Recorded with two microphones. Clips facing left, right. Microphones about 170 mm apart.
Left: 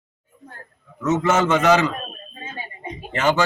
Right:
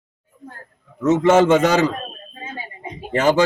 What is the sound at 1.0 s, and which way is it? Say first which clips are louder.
Speech: right 5 dB; 30° right (ahead or behind).